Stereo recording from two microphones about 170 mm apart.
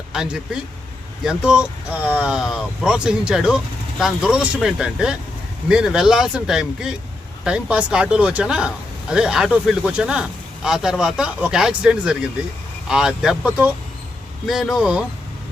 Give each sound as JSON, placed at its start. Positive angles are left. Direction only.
{"t": 0.1, "sound": "speech", "side_deg": -5}